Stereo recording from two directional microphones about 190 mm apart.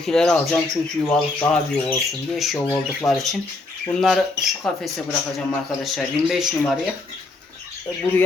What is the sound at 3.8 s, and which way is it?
A man's voice, 5° left (ahead or behind).